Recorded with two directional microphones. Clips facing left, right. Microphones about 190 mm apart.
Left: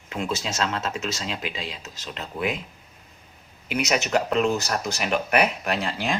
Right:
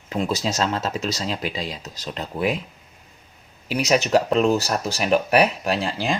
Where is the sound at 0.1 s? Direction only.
35° right (ahead or behind).